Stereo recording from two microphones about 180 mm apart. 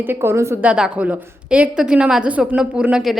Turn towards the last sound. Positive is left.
turn(degrees=-5)  # may be behind; listen again after turning